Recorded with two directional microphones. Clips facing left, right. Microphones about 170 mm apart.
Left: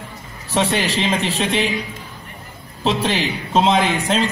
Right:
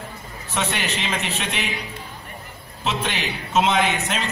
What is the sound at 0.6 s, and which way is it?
A man's voice, 30° left (ahead or behind).